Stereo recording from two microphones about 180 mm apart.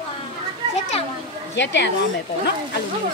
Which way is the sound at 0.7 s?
35° left (ahead or behind).